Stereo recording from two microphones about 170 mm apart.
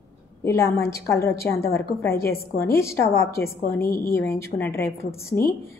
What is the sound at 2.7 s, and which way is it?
Speech, 15° left (ahead or behind).